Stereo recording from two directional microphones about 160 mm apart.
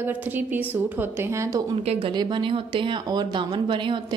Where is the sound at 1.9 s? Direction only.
35° right (ahead or behind).